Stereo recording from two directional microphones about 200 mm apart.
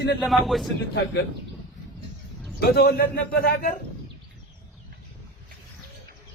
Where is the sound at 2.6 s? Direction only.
50° left (ahead or behind).